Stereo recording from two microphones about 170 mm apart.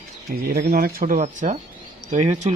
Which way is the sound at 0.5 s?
60° right (ahead or behind).